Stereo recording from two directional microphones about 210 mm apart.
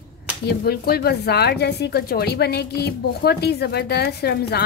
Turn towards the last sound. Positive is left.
turn(degrees=50)  # may be behind; listen again after turning